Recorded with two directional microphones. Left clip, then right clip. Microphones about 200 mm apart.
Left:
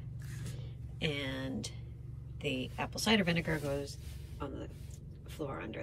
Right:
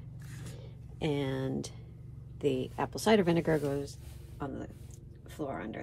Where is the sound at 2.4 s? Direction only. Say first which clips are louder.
Right 5 dB; 15° right (ahead or behind).